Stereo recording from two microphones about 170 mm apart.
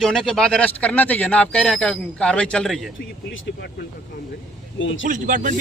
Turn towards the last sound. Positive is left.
turn(degrees=-50)  # may be behind; listen again after turning